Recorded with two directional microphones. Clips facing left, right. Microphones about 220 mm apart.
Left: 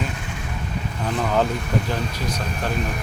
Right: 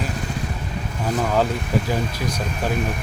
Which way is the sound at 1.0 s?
5° right (ahead or behind).